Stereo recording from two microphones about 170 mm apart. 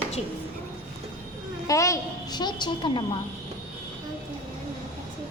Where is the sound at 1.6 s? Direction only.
20° left (ahead or behind).